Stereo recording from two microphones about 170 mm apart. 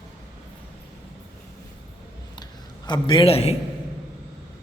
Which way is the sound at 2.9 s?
30° left (ahead or behind).